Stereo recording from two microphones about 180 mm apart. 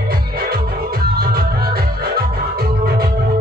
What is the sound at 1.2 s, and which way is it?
Music, 60° right (ahead or behind).